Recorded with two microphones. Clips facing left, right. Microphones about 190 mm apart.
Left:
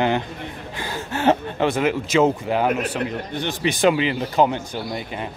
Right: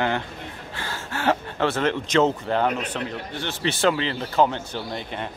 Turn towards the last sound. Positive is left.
turn(degrees=5)  # may be behind; listen again after turning